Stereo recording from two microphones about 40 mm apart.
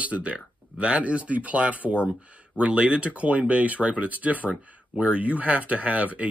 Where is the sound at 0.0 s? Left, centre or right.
Right.